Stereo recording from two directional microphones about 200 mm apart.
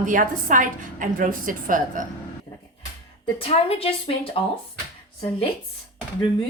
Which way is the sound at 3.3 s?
30° left (ahead or behind).